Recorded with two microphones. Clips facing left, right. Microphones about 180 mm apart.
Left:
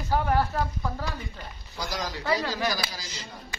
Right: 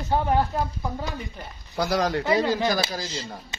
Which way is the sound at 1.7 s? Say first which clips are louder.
Right 10 dB; 60° right (ahead or behind).